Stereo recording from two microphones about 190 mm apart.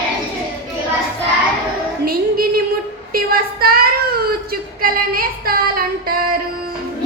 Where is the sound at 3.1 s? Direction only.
50° right (ahead or behind).